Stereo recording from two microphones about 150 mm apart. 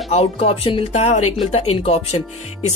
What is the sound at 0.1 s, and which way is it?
Speech, 40° left (ahead or behind).